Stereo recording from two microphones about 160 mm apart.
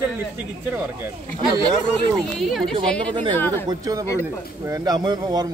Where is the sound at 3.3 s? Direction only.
15° left (ahead or behind).